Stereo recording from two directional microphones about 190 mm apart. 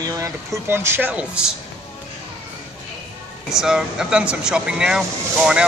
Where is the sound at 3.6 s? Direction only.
5° right (ahead or behind).